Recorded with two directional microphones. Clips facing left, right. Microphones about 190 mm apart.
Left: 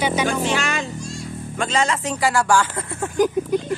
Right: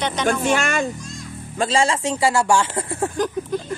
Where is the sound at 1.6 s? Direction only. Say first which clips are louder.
Right 2 dB; 30° right (ahead or behind).